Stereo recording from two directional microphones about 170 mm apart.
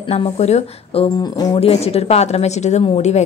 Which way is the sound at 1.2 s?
20° left (ahead or behind).